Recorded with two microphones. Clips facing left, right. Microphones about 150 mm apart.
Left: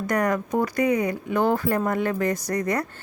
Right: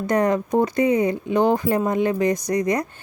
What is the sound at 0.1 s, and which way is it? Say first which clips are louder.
A woman's voice: right 4 dB; 25° right (ahead or behind).